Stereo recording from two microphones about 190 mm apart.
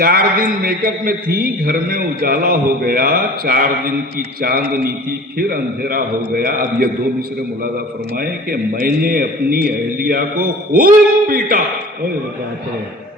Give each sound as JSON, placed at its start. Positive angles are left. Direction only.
{"t": 0.0, "sound": "a man's voice", "side_deg": -50}
{"t": 8.1, "sound": "a man's voice", "side_deg": -50}